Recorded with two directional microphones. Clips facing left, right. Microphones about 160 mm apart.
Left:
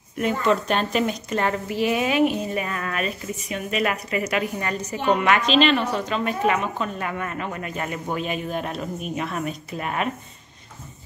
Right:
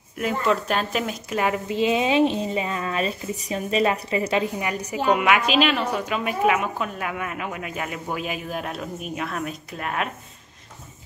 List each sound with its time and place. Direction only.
0.2 s a woman's voice: centre (ahead or behind)
1.7 s speech: 20° right (ahead or behind)
3.3 s speech: 35° right (ahead or behind)
4.6 s a woman's voice: 10° right (ahead or behind)